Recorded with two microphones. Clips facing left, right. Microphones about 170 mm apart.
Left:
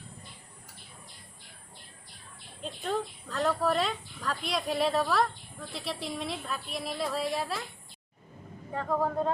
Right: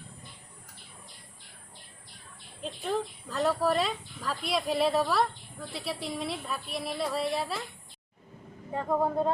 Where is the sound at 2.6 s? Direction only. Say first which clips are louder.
Right 1 dB; 5° right (ahead or behind).